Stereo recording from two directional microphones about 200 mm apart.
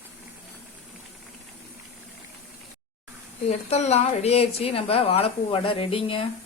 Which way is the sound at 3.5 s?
35° left (ahead or behind).